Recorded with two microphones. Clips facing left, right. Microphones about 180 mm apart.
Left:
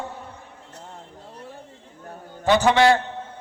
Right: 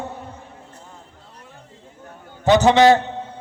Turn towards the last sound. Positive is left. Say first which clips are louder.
# right 4 dB
turn(degrees=-20)  # may be behind; listen again after turning